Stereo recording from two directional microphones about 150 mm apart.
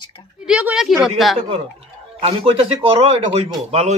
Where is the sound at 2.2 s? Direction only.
40° right (ahead or behind).